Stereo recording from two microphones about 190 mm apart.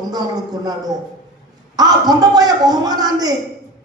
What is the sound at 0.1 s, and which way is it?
A woman's voice, 20° right (ahead or behind).